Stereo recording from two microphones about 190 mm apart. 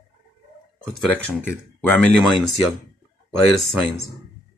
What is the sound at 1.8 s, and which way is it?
Speech, 10° left (ahead or behind).